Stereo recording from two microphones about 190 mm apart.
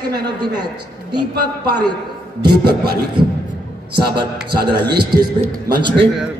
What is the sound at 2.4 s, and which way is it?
A man's voice, 25° right (ahead or behind).